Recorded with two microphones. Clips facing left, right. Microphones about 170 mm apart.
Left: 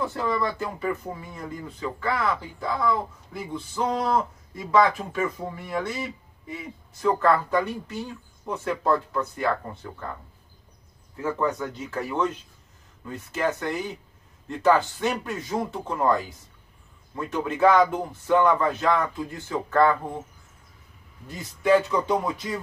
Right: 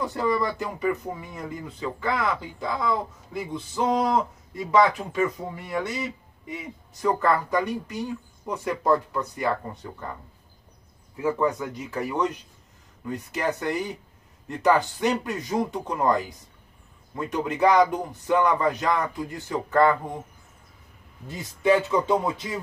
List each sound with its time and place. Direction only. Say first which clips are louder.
0.0 s speech: right 1 dB; 15° right (ahead or behind)
11.1 s speech: right 2 dB; 10° right (ahead or behind)
21.3 s speech: left 1 dB; 20° right (ahead or behind)